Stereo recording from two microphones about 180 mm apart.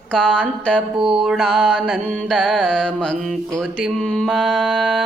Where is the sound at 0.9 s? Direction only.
30° right (ahead or behind).